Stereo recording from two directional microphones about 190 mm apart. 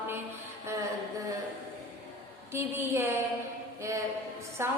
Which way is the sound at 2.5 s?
15° right (ahead or behind).